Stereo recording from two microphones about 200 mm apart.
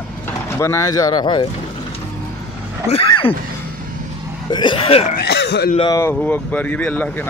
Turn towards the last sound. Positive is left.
turn(degrees=10)  # may be behind; listen again after turning